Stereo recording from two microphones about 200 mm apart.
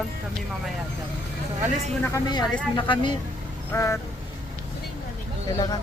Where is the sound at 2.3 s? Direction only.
20° left (ahead or behind).